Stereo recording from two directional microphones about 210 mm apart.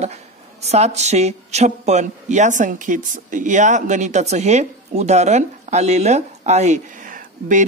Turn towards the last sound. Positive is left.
turn(degrees=-40)  # may be behind; listen again after turning